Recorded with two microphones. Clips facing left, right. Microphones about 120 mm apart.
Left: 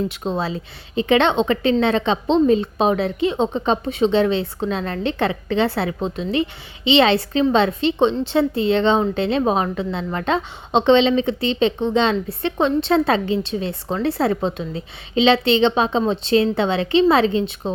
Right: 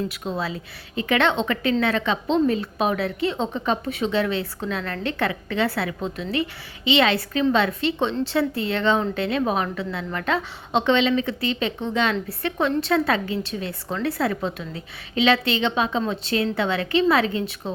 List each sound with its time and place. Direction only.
0.1 s a woman's voice: 25° left (ahead or behind)